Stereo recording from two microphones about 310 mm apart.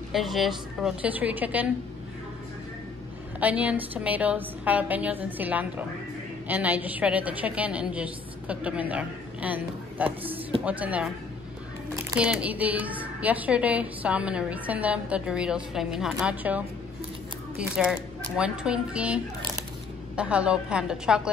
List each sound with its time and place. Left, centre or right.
0.1 s a woman's voice: centre
3.3 s a woman's voice: centre